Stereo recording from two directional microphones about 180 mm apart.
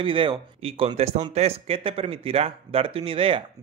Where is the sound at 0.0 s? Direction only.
30° right (ahead or behind).